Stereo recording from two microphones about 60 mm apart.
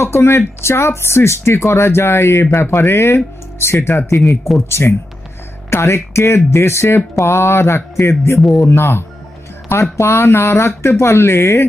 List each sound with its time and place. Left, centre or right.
0.0 s speech: left